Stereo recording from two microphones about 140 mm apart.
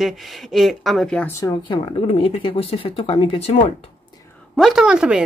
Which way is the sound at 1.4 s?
35° left (ahead or behind).